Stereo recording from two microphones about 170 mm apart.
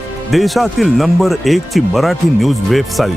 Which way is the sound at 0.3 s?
Centre (ahead or behind).